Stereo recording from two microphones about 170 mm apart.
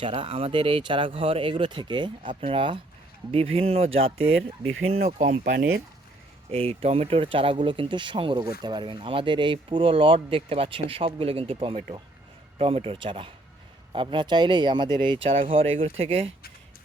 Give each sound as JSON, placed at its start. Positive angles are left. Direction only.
{"t": 0.0, "sound": "speech", "side_deg": -35}
{"t": 6.5, "sound": "speech", "side_deg": -35}